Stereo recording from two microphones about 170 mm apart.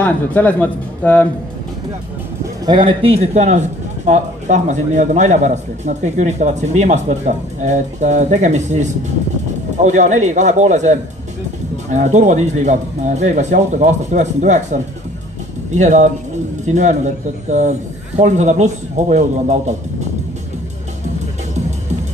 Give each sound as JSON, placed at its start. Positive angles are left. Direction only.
{"t": 0.0, "sound": "speech", "side_deg": 10}
{"t": 2.6, "sound": "a man's voice", "side_deg": -25}
{"t": 9.8, "sound": "a man's voice", "side_deg": -45}